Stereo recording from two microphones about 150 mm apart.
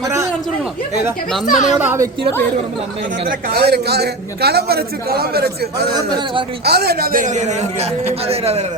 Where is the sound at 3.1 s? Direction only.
75° right (ahead or behind); by 5.8 s 90° right.